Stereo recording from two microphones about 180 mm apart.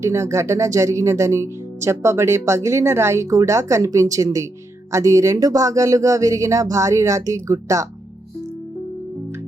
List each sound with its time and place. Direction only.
0.0 s speech: 15° right (ahead or behind)